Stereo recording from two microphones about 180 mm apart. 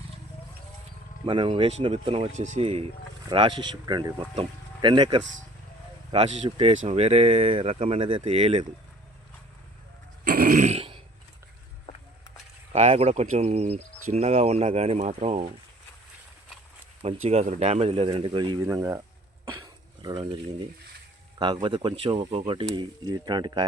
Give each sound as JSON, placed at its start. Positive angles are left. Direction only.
{"t": 1.3, "sound": "speech", "side_deg": -30}
{"t": 10.2, "sound": "throat clearing", "side_deg": -50}
{"t": 12.7, "sound": "speech", "side_deg": -35}
{"t": 17.0, "sound": "speech", "side_deg": -35}
{"t": 18.6, "sound": "speech", "side_deg": -15}
{"t": 19.5, "sound": "a sound", "side_deg": -20}
{"t": 21.3, "sound": "speech", "side_deg": -25}